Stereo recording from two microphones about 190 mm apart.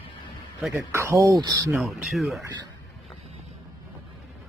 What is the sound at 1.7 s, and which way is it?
Speech, centre (ahead or behind).